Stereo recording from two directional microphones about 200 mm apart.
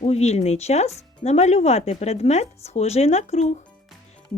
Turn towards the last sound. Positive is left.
turn(degrees=35)  # may be behind; listen again after turning